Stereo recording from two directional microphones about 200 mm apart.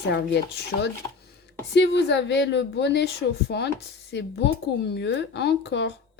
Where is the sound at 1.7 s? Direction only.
60° left (ahead or behind).